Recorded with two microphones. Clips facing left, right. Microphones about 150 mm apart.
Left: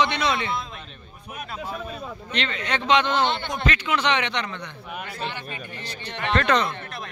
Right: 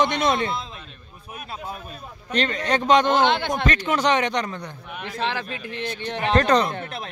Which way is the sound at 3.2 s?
90° right.